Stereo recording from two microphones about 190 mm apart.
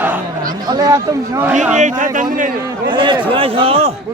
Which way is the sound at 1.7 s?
40° right (ahead or behind).